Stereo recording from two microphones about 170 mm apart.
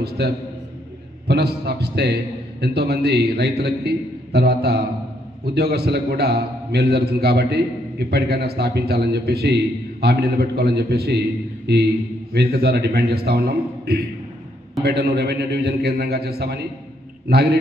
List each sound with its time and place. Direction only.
1.2 s a man's voice: 75° right (ahead or behind)